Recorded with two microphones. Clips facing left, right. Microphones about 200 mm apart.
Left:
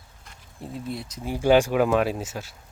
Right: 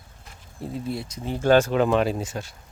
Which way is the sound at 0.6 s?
Centre (ahead or behind).